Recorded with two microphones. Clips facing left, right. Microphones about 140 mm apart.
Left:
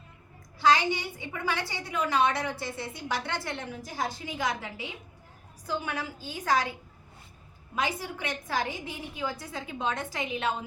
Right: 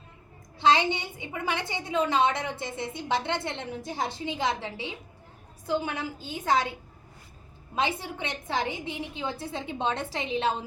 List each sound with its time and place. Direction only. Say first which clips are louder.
0.6 s a woman's voice: right 1 dB; 25° right (ahead or behind)
7.8 s a woman's voice: right 2 dB; 25° right (ahead or behind)